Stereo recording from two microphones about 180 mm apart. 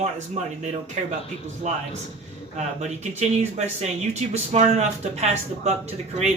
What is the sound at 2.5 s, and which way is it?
Speech, 40° right (ahead or behind).